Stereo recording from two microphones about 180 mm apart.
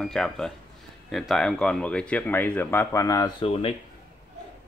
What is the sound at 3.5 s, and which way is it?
Speech, 30° left (ahead or behind).